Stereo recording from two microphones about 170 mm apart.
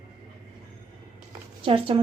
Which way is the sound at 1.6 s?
35° right (ahead or behind).